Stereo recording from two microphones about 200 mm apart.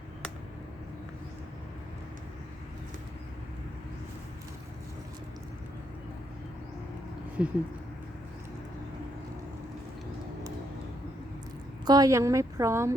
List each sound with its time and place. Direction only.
7.4 s a woman's voice: 5° right (ahead or behind)
11.9 s a woman's voice: 20° right (ahead or behind)